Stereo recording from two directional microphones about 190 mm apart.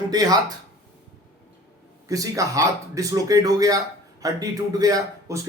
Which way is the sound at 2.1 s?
15° right (ahead or behind).